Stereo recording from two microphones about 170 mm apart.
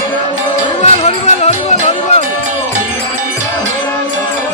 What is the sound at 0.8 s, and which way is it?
Music, 40° left (ahead or behind).